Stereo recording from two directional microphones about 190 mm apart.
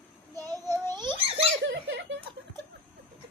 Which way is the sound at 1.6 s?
70° right (ahead or behind).